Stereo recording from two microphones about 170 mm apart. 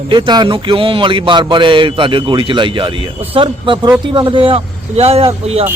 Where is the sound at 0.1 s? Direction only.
25° right (ahead or behind).